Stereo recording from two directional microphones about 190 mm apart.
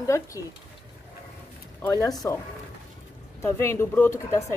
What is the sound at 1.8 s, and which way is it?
Speech, 15° left (ahead or behind).